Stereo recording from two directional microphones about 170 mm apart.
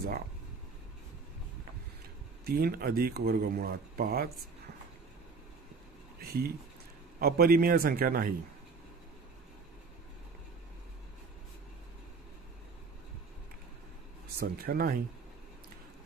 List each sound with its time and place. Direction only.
2.4 s speech: 65° right (ahead or behind)
6.2 s speech: 65° right (ahead or behind)
14.4 s speech: 60° right (ahead or behind)